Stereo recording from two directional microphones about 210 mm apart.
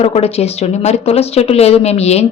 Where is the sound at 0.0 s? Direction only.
30° left (ahead or behind).